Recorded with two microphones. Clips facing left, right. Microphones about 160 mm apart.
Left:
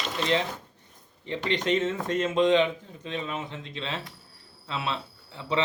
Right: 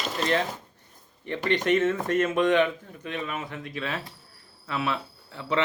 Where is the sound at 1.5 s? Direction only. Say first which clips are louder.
Right 3 dB; 20° left (ahead or behind).